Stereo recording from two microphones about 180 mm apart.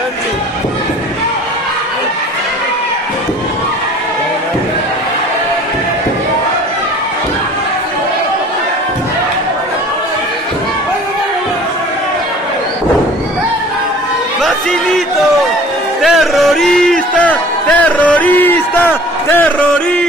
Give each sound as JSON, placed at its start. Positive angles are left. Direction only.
{"t": 16.0, "sound": "music", "side_deg": 0}